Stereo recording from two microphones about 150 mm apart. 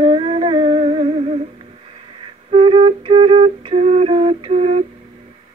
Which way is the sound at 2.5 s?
40° right (ahead or behind).